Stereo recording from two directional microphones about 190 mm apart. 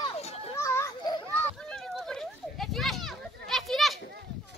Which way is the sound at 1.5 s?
Centre (ahead or behind).